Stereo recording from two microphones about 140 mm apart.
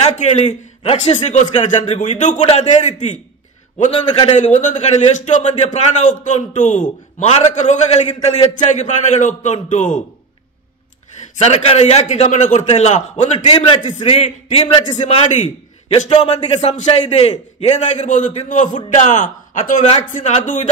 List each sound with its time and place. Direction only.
0.0 s a man's voice: 50° left (ahead or behind)
4.4 s a man's voice: 60° left (ahead or behind)
11.3 s a man's voice: 45° left (ahead or behind)
13.4 s a man's voice: 40° left (ahead or behind)
13.9 s a man's voice: 50° left (ahead or behind)